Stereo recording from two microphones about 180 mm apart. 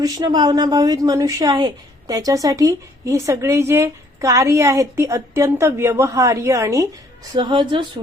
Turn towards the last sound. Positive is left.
turn(degrees=-25)  # may be behind; listen again after turning